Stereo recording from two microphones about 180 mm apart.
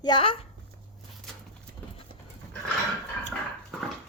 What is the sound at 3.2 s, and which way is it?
Dog, centre (ahead or behind).